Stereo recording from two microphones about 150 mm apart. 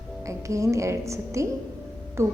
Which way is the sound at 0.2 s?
20° right (ahead or behind).